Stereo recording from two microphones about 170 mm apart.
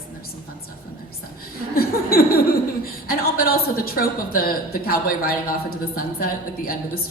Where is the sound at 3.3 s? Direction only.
60° left (ahead or behind).